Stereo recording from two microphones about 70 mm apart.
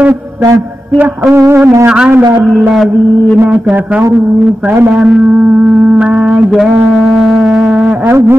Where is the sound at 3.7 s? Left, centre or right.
Right.